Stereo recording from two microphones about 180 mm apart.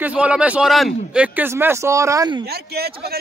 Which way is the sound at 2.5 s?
60° right (ahead or behind).